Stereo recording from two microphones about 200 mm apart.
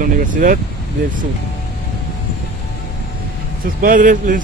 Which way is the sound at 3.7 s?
45° right (ahead or behind).